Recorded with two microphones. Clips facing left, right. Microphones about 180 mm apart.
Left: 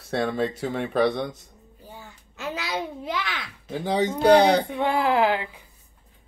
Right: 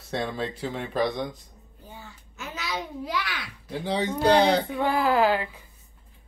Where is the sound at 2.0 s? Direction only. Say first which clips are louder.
Left 2 dB; 50° left (ahead or behind).